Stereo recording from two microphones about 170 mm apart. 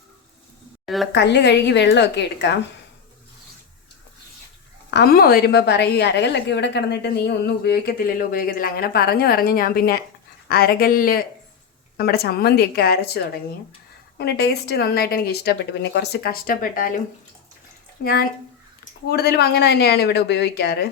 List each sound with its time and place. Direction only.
1.1 s a woman's voice: 90° left
4.9 s a woman's voice: 70° left (ahead or behind)
18.0 s a woman's voice: 60° left (ahead or behind)